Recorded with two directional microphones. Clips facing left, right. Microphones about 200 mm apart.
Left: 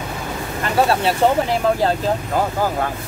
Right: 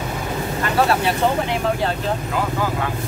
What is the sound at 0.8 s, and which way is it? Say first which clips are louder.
Speech: left 2 dB; 30° left (ahead or behind).